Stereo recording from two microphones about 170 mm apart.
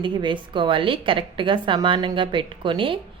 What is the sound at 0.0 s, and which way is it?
A woman's voice, 30° right (ahead or behind).